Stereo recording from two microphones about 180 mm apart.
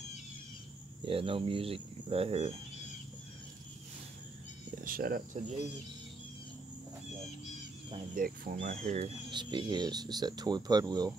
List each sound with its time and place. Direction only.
1.0 s speech: 30° right (ahead or behind)
4.8 s speech: 55° right (ahead or behind)
8.1 s speech: 50° right (ahead or behind)
9.3 s speech: 25° right (ahead or behind)